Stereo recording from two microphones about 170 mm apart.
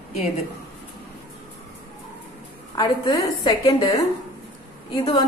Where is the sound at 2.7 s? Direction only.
20° left (ahead or behind).